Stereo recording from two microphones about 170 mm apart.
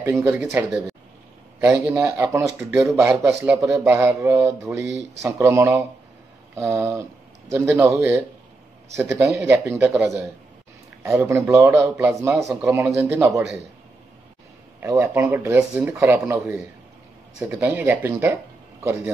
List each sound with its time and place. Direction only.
0.0 s speech: 15° right (ahead or behind)
14.8 s speech: 15° right (ahead or behind)